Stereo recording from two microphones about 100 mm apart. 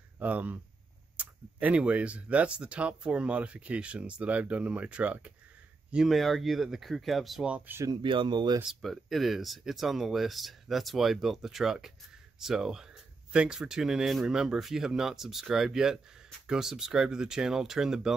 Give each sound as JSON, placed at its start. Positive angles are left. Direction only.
{"t": 0.2, "sound": "speech", "side_deg": -15}
{"t": 7.4, "sound": "speech", "side_deg": -15}
{"t": 8.0, "sound": "speech", "side_deg": -55}
{"t": 8.6, "sound": "speech", "side_deg": 0}